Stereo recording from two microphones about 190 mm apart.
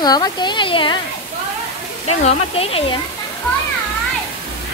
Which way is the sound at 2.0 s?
30° left (ahead or behind).